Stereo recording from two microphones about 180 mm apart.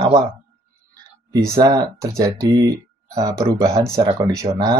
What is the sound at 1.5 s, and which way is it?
Speech, 20° right (ahead or behind).